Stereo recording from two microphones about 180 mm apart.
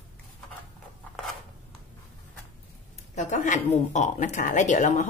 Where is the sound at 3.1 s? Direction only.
40° left (ahead or behind).